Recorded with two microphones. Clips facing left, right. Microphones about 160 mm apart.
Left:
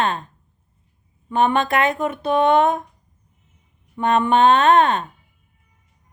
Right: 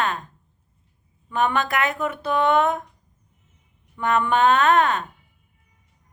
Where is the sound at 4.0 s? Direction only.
25° left (ahead or behind).